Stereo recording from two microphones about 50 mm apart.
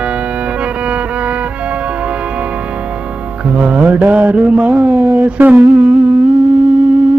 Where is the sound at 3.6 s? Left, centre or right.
Right.